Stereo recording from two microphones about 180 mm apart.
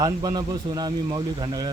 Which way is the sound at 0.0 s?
20° right (ahead or behind).